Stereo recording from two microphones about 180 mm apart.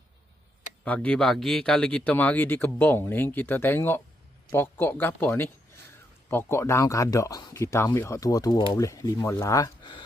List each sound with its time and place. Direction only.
0.9 s speech: 5° left (ahead or behind); by 10.0 s 20° left (ahead or behind)